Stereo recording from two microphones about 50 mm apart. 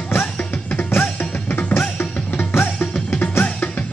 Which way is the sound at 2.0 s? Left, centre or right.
Left.